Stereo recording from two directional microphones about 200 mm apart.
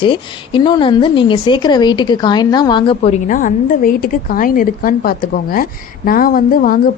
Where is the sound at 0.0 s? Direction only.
25° left (ahead or behind).